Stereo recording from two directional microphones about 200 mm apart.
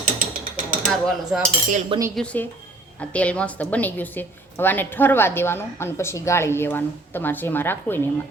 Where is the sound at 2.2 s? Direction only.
5° left (ahead or behind).